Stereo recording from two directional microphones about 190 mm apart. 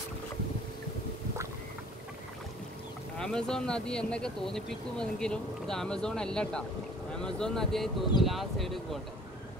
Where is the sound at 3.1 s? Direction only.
5° left (ahead or behind).